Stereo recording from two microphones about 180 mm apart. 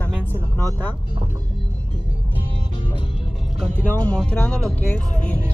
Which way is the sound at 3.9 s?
10° left (ahead or behind).